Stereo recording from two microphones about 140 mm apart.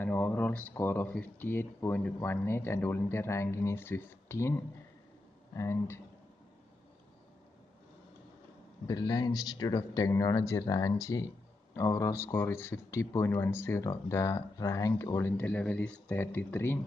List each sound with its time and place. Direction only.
0.0 s speech: 15° left (ahead or behind)
8.8 s speech: 25° left (ahead or behind)